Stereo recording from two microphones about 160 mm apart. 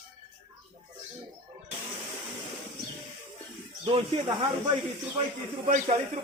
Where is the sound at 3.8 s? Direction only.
30° right (ahead or behind).